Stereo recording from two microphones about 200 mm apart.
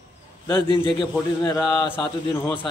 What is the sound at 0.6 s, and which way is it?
Speech, 25° left (ahead or behind).